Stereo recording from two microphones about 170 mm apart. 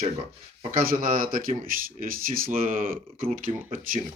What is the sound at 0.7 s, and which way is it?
Speech, 55° right (ahead or behind).